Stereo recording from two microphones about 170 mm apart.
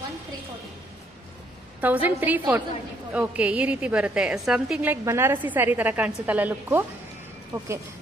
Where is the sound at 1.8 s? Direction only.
10° right (ahead or behind).